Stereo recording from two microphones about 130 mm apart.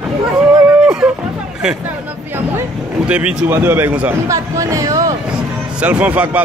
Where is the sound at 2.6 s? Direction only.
10° right (ahead or behind).